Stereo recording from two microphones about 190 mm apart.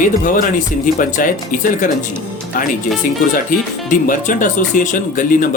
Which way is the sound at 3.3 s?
45° left (ahead or behind).